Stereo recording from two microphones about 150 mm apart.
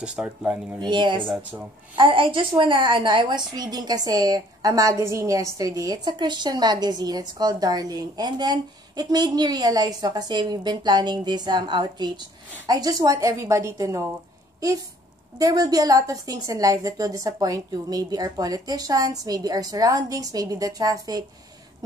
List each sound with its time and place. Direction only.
0.0 s speech: 5° right (ahead or behind)
0.7 s a woman's voice: 30° right (ahead or behind)
15.3 s a woman's voice: 25° right (ahead or behind)